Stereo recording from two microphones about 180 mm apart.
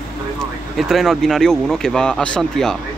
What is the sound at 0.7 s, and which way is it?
Speech, centre (ahead or behind).